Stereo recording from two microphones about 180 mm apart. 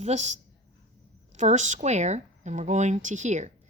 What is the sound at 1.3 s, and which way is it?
Speech, 40° right (ahead or behind).